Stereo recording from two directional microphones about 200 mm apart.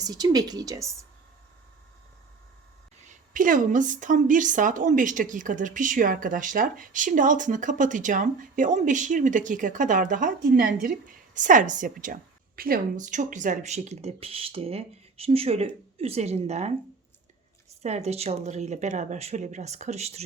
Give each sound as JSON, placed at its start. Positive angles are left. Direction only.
{"t": 0.0, "sound": "speech", "side_deg": -20}
{"t": 3.0, "sound": "a woman's voice", "side_deg": -40}
{"t": 17.8, "sound": "a woman's voice", "side_deg": -35}